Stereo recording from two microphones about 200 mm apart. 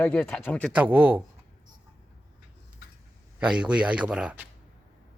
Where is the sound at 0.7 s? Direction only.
5° right (ahead or behind).